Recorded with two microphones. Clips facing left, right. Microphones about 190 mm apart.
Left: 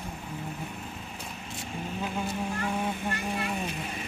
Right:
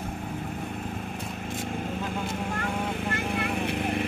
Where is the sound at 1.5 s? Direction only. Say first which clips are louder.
Right 5 dB; 55° right (ahead or behind).